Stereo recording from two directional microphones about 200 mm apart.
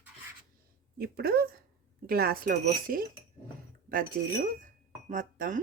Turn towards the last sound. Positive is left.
turn(degrees=-40)  # may be behind; listen again after turning